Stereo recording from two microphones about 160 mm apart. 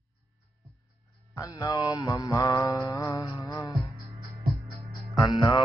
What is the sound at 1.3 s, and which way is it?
Mantra, 20° left (ahead or behind).